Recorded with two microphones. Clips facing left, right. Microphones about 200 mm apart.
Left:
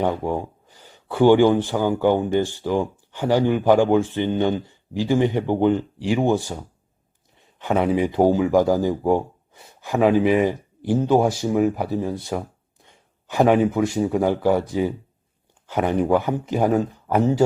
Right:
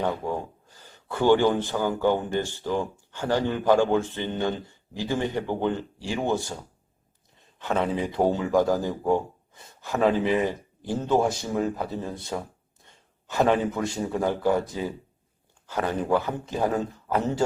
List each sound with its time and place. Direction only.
0.3 s speech: 15° left (ahead or behind)
7.6 s speech: 15° left (ahead or behind)